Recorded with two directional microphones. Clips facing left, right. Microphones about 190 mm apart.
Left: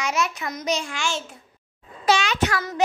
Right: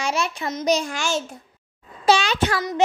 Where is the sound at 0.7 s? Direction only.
40° right (ahead or behind).